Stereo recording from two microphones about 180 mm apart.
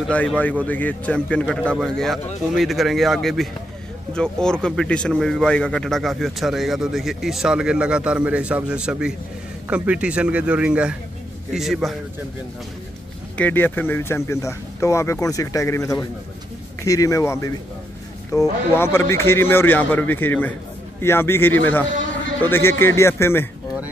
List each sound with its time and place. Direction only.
0.1 s a man's voice: 10° left (ahead or behind)
13.4 s speech: 10° left (ahead or behind)